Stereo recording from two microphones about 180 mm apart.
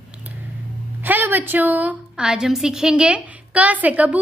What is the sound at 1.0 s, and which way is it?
A woman's voice, 10° right (ahead or behind).